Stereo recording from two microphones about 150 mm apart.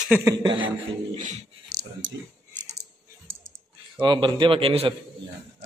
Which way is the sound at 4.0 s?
30° right (ahead or behind).